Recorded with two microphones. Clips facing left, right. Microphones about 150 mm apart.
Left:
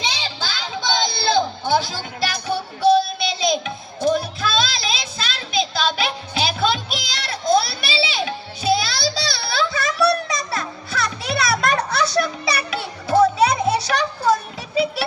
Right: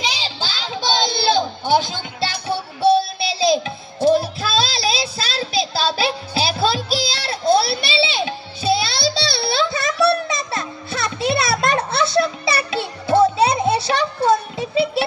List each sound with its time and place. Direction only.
0.2 s music: 15° right (ahead or behind)
1.1 s a sound: 15° right (ahead or behind)
1.6 s music: 15° right (ahead or behind)
4.0 s child singing: 30° right (ahead or behind)